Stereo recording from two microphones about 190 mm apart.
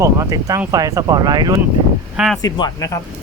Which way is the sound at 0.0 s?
15° right (ahead or behind).